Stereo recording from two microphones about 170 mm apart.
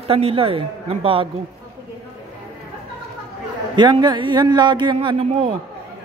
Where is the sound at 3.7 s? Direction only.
25° right (ahead or behind).